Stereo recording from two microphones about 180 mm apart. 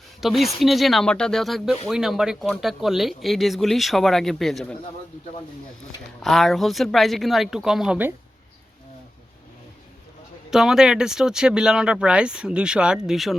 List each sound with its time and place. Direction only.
0.2 s speech: centre (ahead or behind)
6.2 s speech: centre (ahead or behind)
10.5 s speech: 5° right (ahead or behind)